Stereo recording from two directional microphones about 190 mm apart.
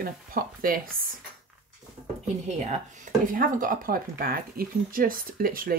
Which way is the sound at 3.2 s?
45° right (ahead or behind).